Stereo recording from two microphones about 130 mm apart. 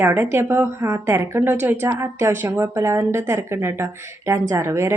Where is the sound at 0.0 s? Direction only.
20° right (ahead or behind).